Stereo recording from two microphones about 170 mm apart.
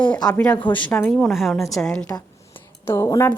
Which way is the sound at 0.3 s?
10° left (ahead or behind).